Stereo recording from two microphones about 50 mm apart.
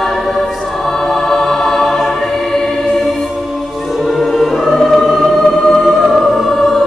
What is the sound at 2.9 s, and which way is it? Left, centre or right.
Music, centre.